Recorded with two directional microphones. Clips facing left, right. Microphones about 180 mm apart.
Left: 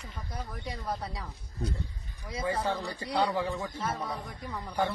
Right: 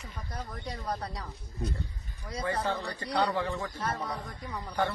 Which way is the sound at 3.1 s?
25° left (ahead or behind).